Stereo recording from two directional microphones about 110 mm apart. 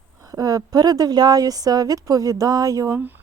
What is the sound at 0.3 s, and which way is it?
Speech, 30° right (ahead or behind).